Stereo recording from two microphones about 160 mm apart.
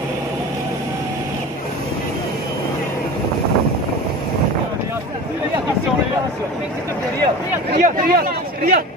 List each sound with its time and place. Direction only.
7.7 s a man's voice: 60° right (ahead or behind)